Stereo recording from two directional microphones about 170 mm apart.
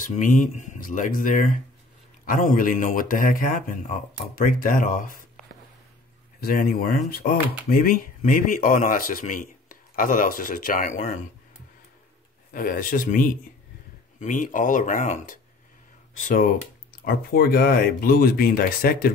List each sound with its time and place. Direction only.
0.0 s speech: 50° left (ahead or behind)
6.4 s speech: 60° left (ahead or behind)
12.5 s speech: 55° left (ahead or behind)
16.9 s speech: 60° left (ahead or behind)